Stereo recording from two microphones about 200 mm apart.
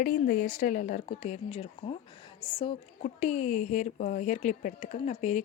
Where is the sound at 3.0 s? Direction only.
35° left (ahead or behind).